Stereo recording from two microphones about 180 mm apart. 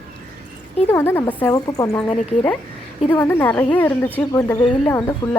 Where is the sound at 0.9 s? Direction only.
15° left (ahead or behind).